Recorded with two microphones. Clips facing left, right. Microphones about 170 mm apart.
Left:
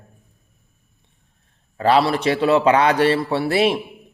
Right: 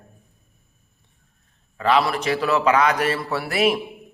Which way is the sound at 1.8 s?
30° left (ahead or behind).